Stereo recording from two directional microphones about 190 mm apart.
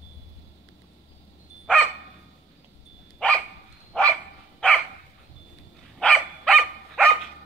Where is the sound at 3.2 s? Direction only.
5° left (ahead or behind).